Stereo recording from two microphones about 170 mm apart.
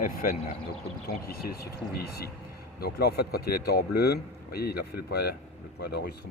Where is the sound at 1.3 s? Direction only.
65° left (ahead or behind).